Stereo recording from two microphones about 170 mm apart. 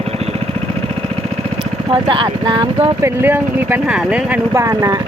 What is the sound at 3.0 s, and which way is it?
Speech, 10° right (ahead or behind).